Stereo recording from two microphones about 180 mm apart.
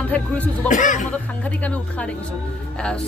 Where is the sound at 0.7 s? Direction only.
45° left (ahead or behind).